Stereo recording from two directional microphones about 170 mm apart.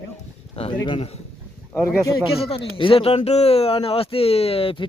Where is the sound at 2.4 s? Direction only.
35° left (ahead or behind).